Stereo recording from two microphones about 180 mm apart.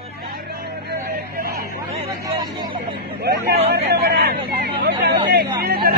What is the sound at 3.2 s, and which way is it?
Speech, 60° right (ahead or behind).